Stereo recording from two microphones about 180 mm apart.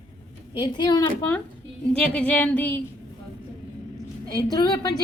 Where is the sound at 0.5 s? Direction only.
25° left (ahead or behind).